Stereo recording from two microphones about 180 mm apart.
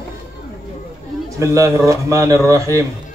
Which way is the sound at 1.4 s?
15° right (ahead or behind).